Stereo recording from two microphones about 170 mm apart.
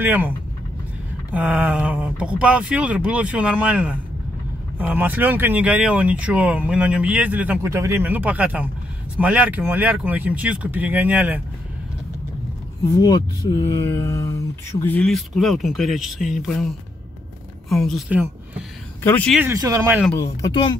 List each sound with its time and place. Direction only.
0.0 s speech: 10° right (ahead or behind)
1.3 s speech: 10° right (ahead or behind)
12.9 s speech: 20° left (ahead or behind); by 18.6 s 5° right (ahead or behind)
19.0 s speech: 10° left (ahead or behind)
19.3 s speech: 15° right (ahead or behind)
20.2 s speech: 25° left (ahead or behind)